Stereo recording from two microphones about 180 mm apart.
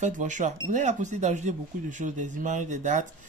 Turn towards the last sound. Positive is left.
turn(degrees=-45)  # may be behind; listen again after turning